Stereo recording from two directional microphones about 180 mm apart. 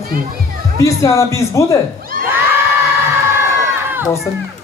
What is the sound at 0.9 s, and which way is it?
Speech, 15° left (ahead or behind).